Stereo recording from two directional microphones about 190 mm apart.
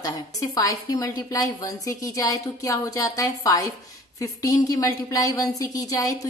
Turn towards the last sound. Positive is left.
turn(degrees=20)  # may be behind; listen again after turning